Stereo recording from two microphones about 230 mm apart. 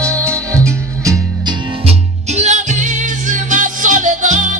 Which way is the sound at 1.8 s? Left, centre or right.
Right.